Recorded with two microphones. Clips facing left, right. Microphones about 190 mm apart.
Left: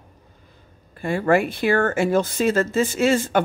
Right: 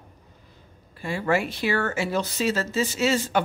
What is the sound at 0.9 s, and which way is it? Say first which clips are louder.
Speech: left 5 dB; 50° left (ahead or behind).